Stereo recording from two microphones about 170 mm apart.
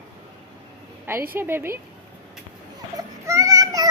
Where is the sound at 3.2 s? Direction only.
20° right (ahead or behind).